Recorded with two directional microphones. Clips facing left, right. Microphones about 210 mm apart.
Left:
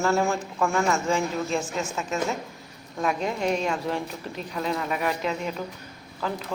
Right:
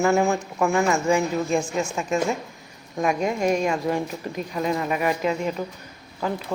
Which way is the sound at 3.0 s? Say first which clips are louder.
Right 4 dB; 10° right (ahead or behind).